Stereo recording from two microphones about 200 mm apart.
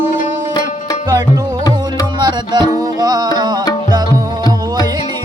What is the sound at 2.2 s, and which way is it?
Music, 20° right (ahead or behind).